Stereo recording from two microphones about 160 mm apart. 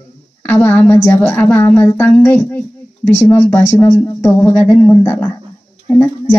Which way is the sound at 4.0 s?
20° left (ahead or behind).